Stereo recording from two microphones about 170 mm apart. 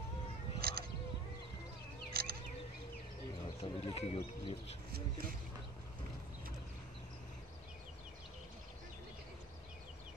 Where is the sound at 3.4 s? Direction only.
30° left (ahead or behind).